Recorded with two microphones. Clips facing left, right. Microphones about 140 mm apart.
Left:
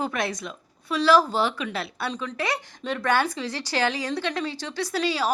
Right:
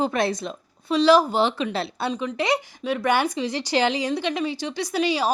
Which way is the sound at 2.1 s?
15° right (ahead or behind).